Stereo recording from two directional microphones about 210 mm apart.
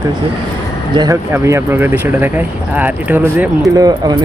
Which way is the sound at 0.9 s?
15° right (ahead or behind).